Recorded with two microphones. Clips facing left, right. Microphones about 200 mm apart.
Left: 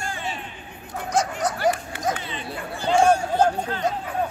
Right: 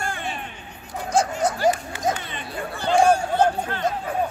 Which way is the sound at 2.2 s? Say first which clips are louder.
Right 1 dB; 55° right (ahead or behind).